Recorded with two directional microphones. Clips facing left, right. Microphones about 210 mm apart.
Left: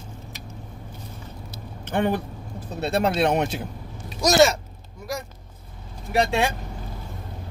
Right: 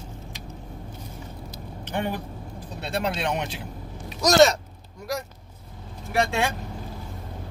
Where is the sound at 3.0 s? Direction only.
40° left (ahead or behind).